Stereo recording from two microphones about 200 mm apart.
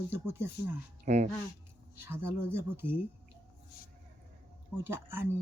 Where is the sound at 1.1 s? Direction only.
35° right (ahead or behind).